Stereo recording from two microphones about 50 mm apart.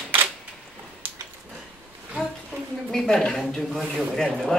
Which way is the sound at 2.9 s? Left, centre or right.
Centre.